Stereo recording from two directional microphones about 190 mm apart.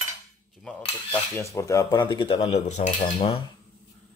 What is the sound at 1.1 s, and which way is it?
Speech, 15° left (ahead or behind).